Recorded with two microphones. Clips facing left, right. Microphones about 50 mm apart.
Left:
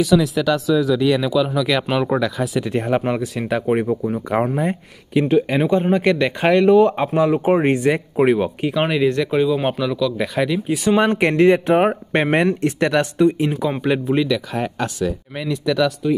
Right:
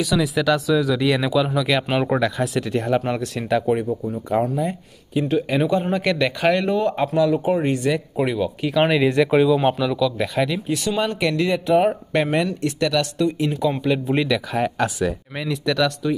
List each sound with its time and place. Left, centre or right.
0.0 s speech: centre
2.6 s speech: centre
4.3 s speech: left
5.3 s speech: left
8.7 s speech: centre
9.1 s speech: centre
9.5 s speech: centre
10.9 s speech: left
13.0 s speech: left
14.0 s speech: centre